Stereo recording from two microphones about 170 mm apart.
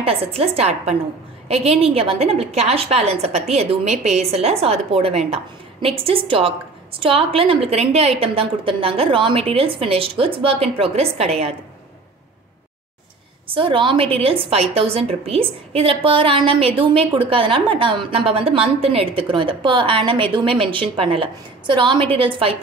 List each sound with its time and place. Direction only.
0.0 s a woman's voice: 35° right (ahead or behind)
13.5 s a woman's voice: 30° right (ahead or behind)